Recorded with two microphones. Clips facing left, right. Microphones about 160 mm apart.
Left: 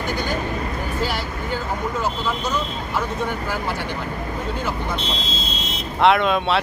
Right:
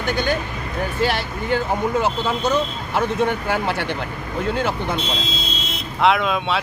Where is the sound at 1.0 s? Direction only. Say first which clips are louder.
Right 4 dB; 70° right (ahead or behind).